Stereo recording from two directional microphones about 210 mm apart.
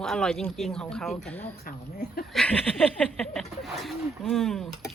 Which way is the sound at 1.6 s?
45° left (ahead or behind).